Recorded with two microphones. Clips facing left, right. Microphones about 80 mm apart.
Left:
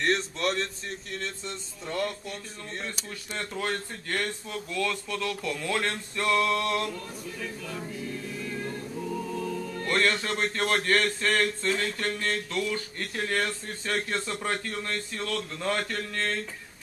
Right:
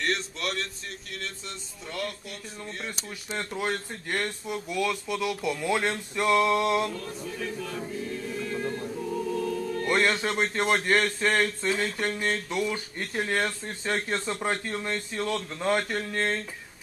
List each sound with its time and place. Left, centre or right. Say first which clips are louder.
0.0 s a sound: left 3 dB; left
1.9 s speech: left 3 dB; left
3.3 s speech: right 1 dB; centre
8.5 s music: right 4 dB; centre
9.8 s speech: right 1 dB; centre